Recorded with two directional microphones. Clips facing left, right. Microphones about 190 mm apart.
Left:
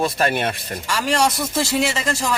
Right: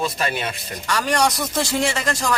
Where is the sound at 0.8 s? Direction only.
10° left (ahead or behind).